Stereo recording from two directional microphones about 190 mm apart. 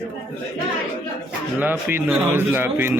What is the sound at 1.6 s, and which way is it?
A man's voice, 10° right (ahead or behind).